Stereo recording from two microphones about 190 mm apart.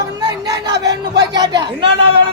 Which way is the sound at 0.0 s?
20° right (ahead or behind).